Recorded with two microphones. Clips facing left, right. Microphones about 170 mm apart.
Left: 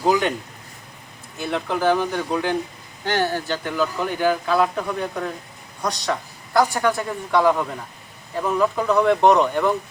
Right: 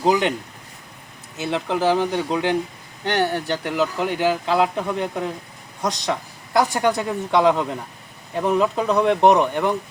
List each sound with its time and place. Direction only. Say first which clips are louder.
0.0 s speech: right 1 dB; 20° right (ahead or behind)
1.4 s speech: right 1 dB; 20° right (ahead or behind)
6.6 s speech: even; 20° right (ahead or behind)